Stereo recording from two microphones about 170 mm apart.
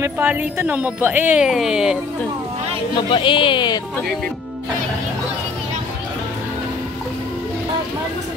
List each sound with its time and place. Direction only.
0.0 s speech: 10° right (ahead or behind)
3.1 s speech: 30° left (ahead or behind)